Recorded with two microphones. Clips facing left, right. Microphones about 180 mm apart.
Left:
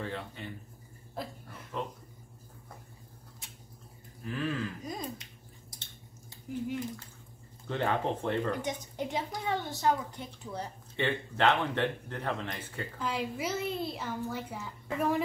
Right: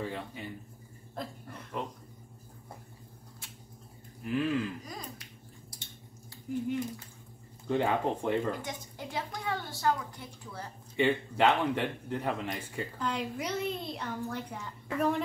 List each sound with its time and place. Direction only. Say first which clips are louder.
0.0 s speech: right 1 dB; 10° right (ahead or behind)
1.1 s a sound: even; 5° left (ahead or behind)
4.2 s speech: right 4 dB; 15° right (ahead or behind)
4.8 s a sound: left 5 dB; 20° left (ahead or behind)
7.6 s speech: right 2 dB; 10° right (ahead or behind)
8.6 s a woman's voice: left 5 dB; 20° left (ahead or behind)
11.0 s speech: right 3 dB; 10° right (ahead or behind)
13.0 s a woman's voice: left 1 dB; 5° left (ahead or behind)